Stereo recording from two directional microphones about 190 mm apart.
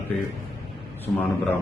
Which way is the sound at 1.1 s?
15° left (ahead or behind).